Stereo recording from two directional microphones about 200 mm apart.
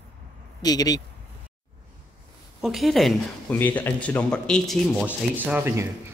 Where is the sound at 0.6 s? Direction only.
20° left (ahead or behind).